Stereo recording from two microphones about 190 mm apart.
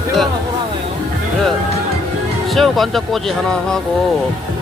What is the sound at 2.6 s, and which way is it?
Speech, centre (ahead or behind).